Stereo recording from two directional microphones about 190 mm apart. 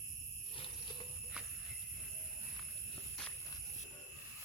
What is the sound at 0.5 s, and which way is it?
Jingle bell, 25° left (ahead or behind).